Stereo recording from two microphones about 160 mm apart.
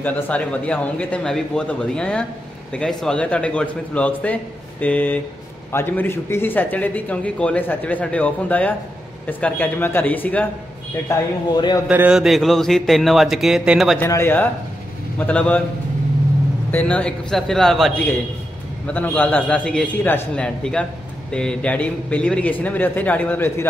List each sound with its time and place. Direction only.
0.0 s speech: 10° left (ahead or behind)
11.1 s a man's voice: 25° left (ahead or behind)
11.9 s a man's voice: 10° right (ahead or behind)
13.9 s speech: 15° left (ahead or behind)
16.7 s a man's voice: 5° left (ahead or behind)